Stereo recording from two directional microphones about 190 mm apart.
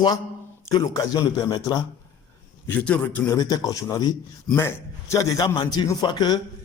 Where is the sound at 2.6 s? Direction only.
10° left (ahead or behind).